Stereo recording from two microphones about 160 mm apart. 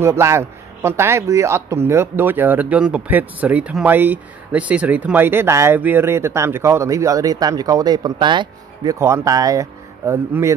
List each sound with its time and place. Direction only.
0.0 s a man's voice: 15° right (ahead or behind)